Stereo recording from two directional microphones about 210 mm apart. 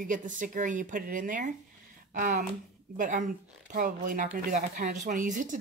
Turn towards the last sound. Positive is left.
turn(degrees=-40)  # may be behind; listen again after turning